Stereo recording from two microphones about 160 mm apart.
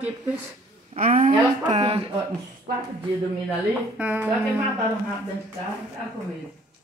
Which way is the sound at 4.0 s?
10° right (ahead or behind).